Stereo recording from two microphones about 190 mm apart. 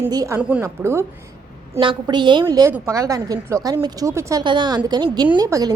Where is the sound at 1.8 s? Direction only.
25° right (ahead or behind).